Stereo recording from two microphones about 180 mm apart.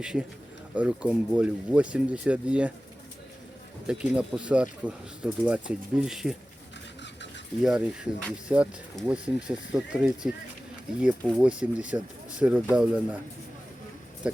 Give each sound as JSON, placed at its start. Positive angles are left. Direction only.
{"t": 0.0, "sound": "speech", "side_deg": -5}
{"t": 3.8, "sound": "speech", "side_deg": -5}
{"t": 7.0, "sound": "a sound", "side_deg": 80}
{"t": 7.6, "sound": "speech", "side_deg": -5}
{"t": 11.3, "sound": "speech", "side_deg": -5}